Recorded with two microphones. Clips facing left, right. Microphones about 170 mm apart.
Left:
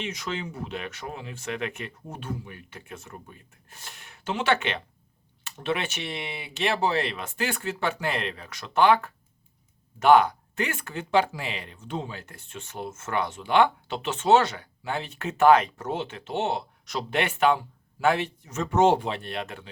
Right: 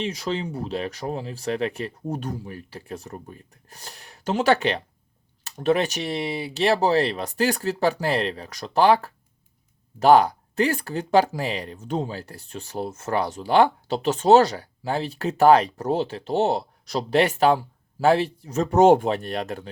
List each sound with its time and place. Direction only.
0.0 s speech: 35° right (ahead or behind)